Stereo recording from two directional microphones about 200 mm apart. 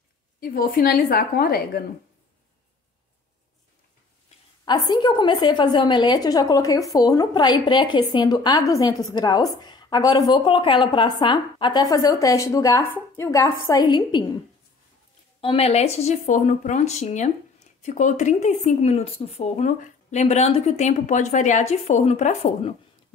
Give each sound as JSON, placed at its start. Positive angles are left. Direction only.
{"t": 0.4, "sound": "a woman's voice", "side_deg": 45}
{"t": 4.6, "sound": "a woman's voice", "side_deg": 20}
{"t": 15.4, "sound": "speech", "side_deg": 30}